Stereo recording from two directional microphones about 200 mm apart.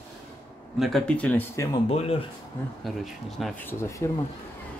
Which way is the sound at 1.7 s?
30° left (ahead or behind).